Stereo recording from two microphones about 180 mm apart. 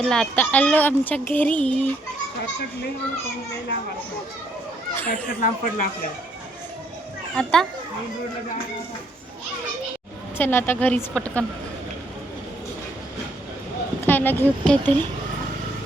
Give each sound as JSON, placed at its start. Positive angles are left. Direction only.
{"t": 0.0, "sound": "speech", "side_deg": 5}
{"t": 5.1, "sound": "speech", "side_deg": 45}
{"t": 7.3, "sound": "a child's voice", "side_deg": 5}
{"t": 10.3, "sound": "speech", "side_deg": 10}
{"t": 14.0, "sound": "speech", "side_deg": 10}